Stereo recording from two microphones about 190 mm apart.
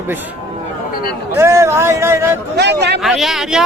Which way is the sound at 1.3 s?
15° right (ahead or behind).